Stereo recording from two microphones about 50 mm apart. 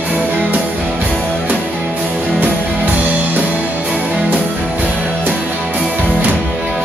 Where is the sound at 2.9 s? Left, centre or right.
Right.